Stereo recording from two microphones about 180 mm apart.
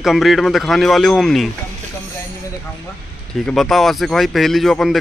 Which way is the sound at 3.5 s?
Centre (ahead or behind).